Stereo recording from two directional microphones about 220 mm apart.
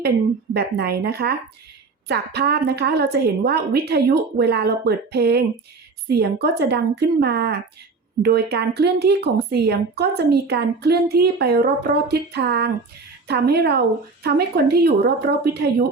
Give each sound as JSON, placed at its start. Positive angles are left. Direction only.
{"t": 0.5, "sound": "a woman's voice", "side_deg": -45}